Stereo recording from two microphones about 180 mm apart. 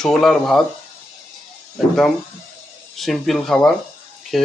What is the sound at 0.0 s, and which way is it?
Speech, centre (ahead or behind).